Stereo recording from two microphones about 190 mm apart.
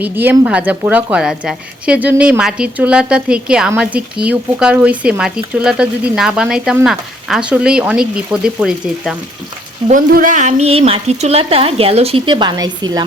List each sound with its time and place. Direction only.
0.0 s a woman's voice: 10° right (ahead or behind)
9.9 s a woman's voice: 45° right (ahead or behind); by 13.0 s 20° right (ahead or behind)